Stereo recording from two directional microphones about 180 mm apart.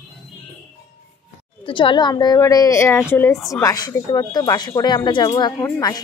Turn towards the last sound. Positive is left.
turn(degrees=20)  # may be behind; listen again after turning